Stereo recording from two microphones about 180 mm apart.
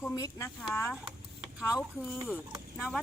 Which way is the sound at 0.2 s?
15° left (ahead or behind).